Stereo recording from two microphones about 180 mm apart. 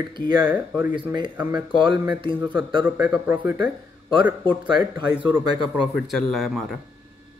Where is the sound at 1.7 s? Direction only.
25° right (ahead or behind).